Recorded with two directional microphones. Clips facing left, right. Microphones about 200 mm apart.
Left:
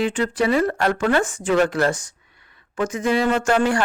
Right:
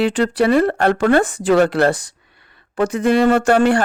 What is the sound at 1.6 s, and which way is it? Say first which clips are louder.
Speech: right 5 dB; 60° right (ahead or behind).